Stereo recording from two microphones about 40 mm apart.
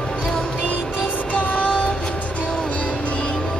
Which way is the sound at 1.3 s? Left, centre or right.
Left.